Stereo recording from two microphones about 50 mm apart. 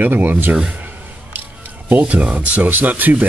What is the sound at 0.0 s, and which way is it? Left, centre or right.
Speech, right.